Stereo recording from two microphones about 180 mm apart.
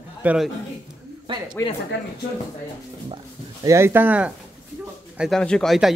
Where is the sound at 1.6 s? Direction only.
15° left (ahead or behind).